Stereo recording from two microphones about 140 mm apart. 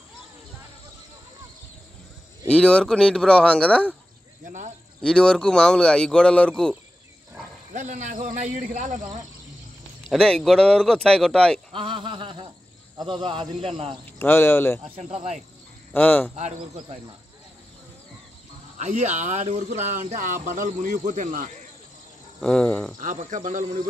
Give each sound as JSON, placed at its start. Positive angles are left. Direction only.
{"t": 2.4, "sound": "speech", "side_deg": 5}
{"t": 4.5, "sound": "speech", "side_deg": -60}
{"t": 5.0, "sound": "speech", "side_deg": 5}
{"t": 7.7, "sound": "speech", "side_deg": -60}
{"t": 10.0, "sound": "speech", "side_deg": 5}
{"t": 11.7, "sound": "speech", "side_deg": -40}
{"t": 14.1, "sound": "speech", "side_deg": 15}
{"t": 15.0, "sound": "speech", "side_deg": -55}
{"t": 15.9, "sound": "speech", "side_deg": 10}
{"t": 18.8, "sound": "speech", "side_deg": -60}
{"t": 22.4, "sound": "speech", "side_deg": 5}
{"t": 22.9, "sound": "speech", "side_deg": -65}